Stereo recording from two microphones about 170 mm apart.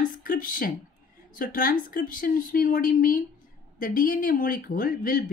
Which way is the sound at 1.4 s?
55° left (ahead or behind).